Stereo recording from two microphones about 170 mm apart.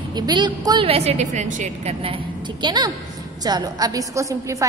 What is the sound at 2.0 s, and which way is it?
A woman's voice, 30° right (ahead or behind).